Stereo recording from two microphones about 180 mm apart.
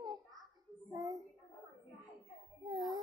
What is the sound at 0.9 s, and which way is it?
Speech, 20° right (ahead or behind).